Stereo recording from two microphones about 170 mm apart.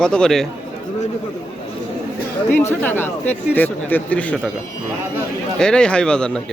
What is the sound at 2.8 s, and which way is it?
Speech, 10° left (ahead or behind).